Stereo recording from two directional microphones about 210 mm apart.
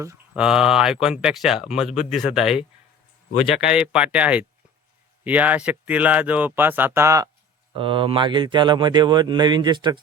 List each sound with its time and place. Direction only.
0.0 s speech: 15° right (ahead or behind)
0.4 s speech: 5° right (ahead or behind)
7.7 s speech: 25° right (ahead or behind)